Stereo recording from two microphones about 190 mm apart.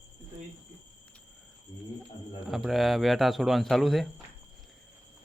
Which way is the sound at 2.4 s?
Centre (ahead or behind).